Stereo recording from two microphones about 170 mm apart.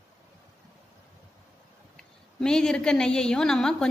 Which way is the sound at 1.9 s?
5° left (ahead or behind).